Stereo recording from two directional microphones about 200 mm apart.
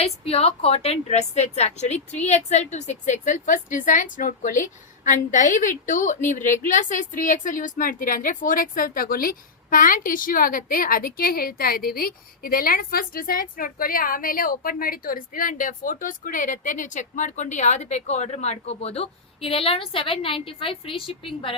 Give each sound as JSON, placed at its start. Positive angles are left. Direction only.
{"t": 0.0, "sound": "a woman's voice", "side_deg": 30}